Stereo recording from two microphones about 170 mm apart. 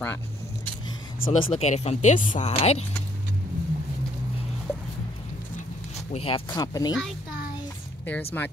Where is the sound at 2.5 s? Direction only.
35° left (ahead or behind).